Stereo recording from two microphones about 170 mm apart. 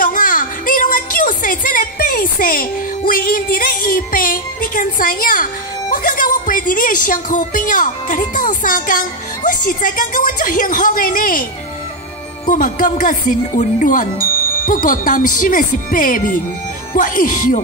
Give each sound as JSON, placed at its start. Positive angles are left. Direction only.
{"t": 0.0, "sound": "a woman's voice", "side_deg": 55}
{"t": 12.4, "sound": "speech", "side_deg": 50}